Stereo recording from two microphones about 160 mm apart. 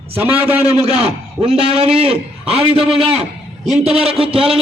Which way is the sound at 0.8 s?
40° right (ahead or behind).